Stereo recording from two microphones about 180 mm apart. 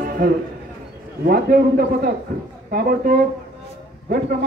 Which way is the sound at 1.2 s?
55° right (ahead or behind).